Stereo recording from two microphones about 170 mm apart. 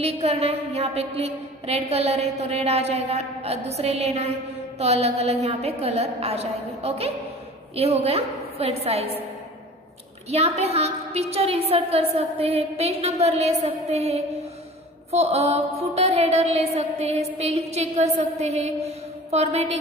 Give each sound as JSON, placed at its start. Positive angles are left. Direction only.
{"t": 0.0, "sound": "a woman's voice", "side_deg": -40}
{"t": 10.3, "sound": "a woman's voice", "side_deg": -40}